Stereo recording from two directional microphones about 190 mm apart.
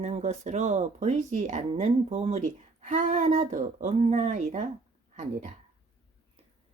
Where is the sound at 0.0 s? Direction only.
35° right (ahead or behind).